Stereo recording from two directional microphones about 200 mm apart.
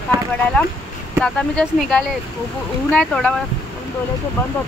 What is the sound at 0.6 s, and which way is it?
Speech, 5° left (ahead or behind).